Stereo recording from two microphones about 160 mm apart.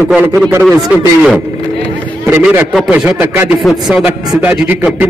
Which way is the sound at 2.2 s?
10° right (ahead or behind).